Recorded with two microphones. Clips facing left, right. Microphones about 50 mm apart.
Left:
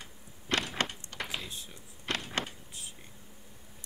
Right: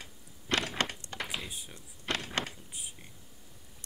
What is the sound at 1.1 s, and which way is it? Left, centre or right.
Door, centre.